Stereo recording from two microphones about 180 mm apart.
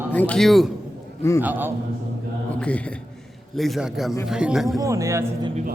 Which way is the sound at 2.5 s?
5° left (ahead or behind).